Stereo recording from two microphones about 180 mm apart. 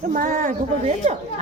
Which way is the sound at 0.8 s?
35° right (ahead or behind).